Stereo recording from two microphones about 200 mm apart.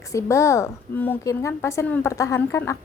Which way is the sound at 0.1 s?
15° left (ahead or behind).